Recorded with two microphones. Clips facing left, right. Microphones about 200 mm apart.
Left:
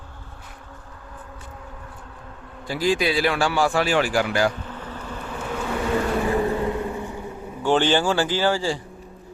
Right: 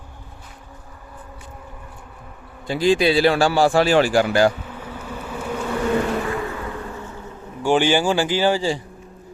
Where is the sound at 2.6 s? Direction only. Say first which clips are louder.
Right 5 dB; 25° right (ahead or behind).